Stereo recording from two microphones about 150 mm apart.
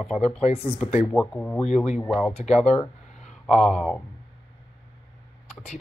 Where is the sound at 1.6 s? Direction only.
45° left (ahead or behind).